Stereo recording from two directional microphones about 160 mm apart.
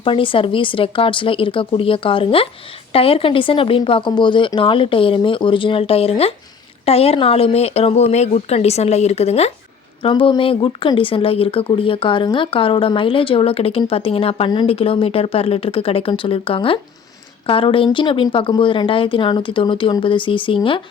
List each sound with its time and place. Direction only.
0.0 s speech: 35° left (ahead or behind)